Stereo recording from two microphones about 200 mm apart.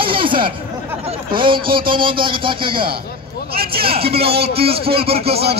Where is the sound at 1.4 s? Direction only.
25° right (ahead or behind).